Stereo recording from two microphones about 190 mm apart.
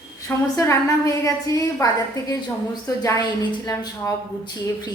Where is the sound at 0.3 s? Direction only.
15° left (ahead or behind).